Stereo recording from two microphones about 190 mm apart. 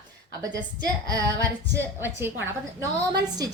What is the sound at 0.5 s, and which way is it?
A woman's voice, 20° right (ahead or behind).